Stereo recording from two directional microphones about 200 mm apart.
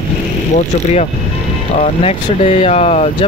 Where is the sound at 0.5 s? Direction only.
35° left (ahead or behind).